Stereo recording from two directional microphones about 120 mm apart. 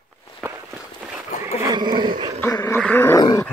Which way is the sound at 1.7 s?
35° right (ahead or behind).